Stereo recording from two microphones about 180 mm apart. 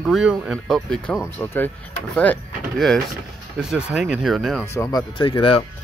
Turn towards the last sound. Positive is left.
turn(degrees=30)  # may be behind; listen again after turning